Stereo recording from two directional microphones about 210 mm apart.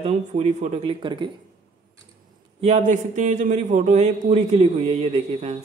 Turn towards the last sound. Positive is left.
turn(degrees=-30)  # may be behind; listen again after turning